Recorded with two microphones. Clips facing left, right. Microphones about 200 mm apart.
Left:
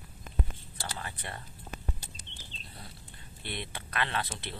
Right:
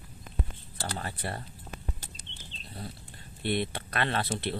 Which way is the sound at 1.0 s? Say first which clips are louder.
Right 5 dB; 35° right (ahead or behind).